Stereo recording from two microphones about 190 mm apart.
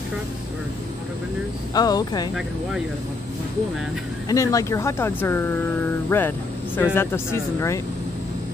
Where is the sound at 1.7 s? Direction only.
20° left (ahead or behind).